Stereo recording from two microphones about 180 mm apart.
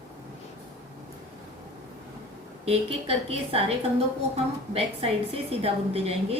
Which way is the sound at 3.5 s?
35° right (ahead or behind).